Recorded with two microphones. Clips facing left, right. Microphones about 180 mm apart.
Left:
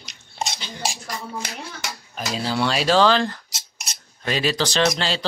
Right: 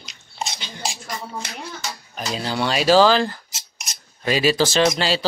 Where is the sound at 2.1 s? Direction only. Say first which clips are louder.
Left 1 dB; centre (ahead or behind).